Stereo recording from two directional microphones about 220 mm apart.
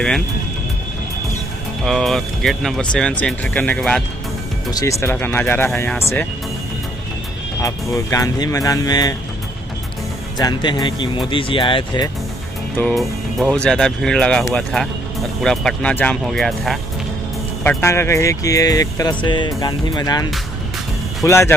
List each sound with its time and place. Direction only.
1.9 s speech: centre (ahead or behind)
4.6 s speech: 15° left (ahead or behind)
7.6 s speech: 15° left (ahead or behind)
10.3 s speech: 20° left (ahead or behind)
12.7 s speech: centre (ahead or behind)
17.6 s speech: 10° left (ahead or behind)